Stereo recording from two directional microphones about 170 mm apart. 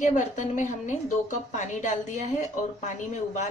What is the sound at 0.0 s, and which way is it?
A woman's voice, 45° left (ahead or behind).